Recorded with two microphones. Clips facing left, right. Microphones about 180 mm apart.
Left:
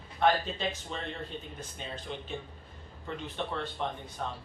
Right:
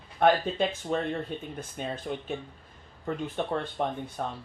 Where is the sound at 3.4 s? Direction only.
50° right (ahead or behind).